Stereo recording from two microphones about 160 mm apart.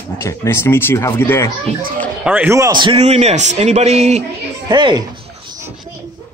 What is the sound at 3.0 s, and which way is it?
A man's voice, 45° right (ahead or behind).